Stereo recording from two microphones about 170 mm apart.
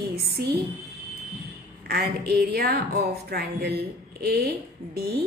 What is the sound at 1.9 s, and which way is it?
A woman's voice, 65° right (ahead or behind).